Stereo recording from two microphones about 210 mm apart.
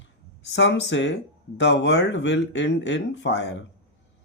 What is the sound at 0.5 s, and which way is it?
Speech, 60° left (ahead or behind).